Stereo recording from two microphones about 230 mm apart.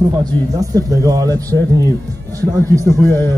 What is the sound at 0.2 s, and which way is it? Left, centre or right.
A man's voice, centre.